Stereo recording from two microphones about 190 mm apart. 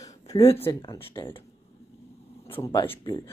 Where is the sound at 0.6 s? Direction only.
15° left (ahead or behind).